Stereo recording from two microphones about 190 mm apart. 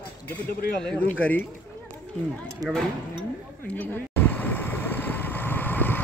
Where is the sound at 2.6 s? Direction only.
20° right (ahead or behind).